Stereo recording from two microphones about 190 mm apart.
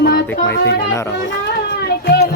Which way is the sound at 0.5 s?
65° left (ahead or behind).